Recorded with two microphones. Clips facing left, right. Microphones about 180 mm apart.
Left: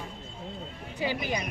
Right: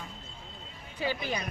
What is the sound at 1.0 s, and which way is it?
Speech, 15° left (ahead or behind).